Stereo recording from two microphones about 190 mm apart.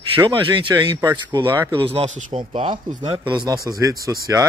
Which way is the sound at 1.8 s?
30° right (ahead or behind).